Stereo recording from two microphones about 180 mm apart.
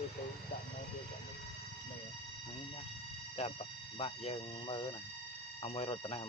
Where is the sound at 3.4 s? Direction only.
35° left (ahead or behind).